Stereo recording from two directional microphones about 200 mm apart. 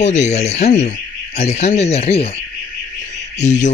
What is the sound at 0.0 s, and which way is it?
Speech, 35° left (ahead or behind).